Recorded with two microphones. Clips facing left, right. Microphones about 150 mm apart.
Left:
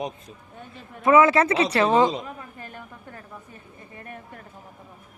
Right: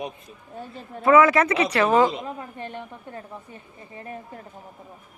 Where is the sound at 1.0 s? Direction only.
25° left (ahead or behind).